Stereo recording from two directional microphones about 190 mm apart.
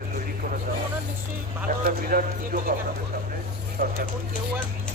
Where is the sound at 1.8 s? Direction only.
50° right (ahead or behind).